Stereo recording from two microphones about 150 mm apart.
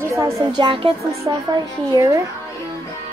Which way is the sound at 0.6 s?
35° right (ahead or behind).